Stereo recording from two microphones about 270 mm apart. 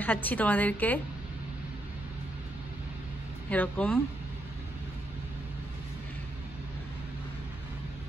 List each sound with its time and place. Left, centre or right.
0.0 s a woman's voice: centre
3.4 s speech: centre